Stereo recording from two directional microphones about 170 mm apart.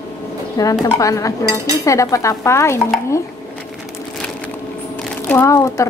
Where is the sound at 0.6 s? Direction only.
20° left (ahead or behind).